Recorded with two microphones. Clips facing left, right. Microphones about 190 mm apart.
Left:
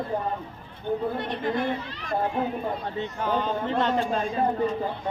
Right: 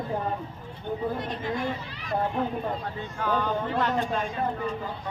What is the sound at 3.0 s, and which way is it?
Speech, 20° left (ahead or behind).